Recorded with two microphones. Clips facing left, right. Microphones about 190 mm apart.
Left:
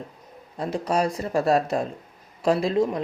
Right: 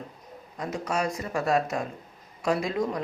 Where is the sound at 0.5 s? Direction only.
30° left (ahead or behind).